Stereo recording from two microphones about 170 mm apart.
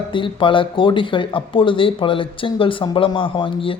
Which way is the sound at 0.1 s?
30° left (ahead or behind).